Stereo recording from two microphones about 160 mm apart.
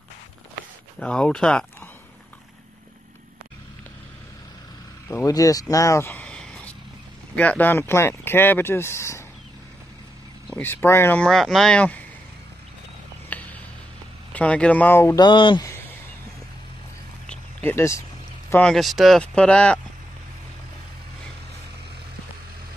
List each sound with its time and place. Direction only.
0.9 s speech: 5° left (ahead or behind)
5.0 s speech: 20° left (ahead or behind)
10.5 s speech: 15° left (ahead or behind)
13.3 s a sound: 10° left (ahead or behind)
14.3 s speech: 10° left (ahead or behind)
15.1 s speech: 30° left (ahead or behind)
17.3 s a sound: 10° left (ahead or behind)
18.5 s speech: 5° left (ahead or behind)